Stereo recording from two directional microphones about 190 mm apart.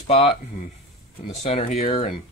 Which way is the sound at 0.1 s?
30° left (ahead or behind).